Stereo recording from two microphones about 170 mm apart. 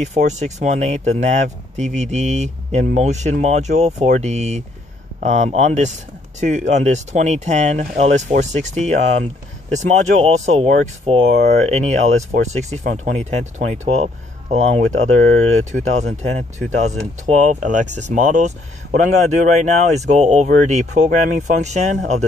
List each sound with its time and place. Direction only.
0.0 s speech: 45° right (ahead or behind)